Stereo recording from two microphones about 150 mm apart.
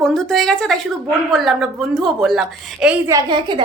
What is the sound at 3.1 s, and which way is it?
Speech, 30° right (ahead or behind).